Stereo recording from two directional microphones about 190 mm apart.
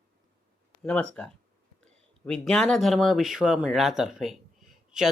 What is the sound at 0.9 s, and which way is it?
Speech, 5° left (ahead or behind).